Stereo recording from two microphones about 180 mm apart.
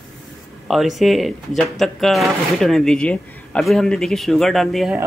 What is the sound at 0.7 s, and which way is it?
Speech, centre (ahead or behind).